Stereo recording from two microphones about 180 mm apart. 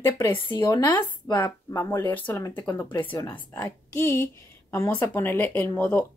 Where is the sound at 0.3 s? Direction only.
25° left (ahead or behind).